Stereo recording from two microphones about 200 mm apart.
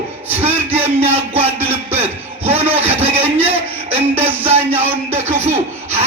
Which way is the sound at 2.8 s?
30° right (ahead or behind).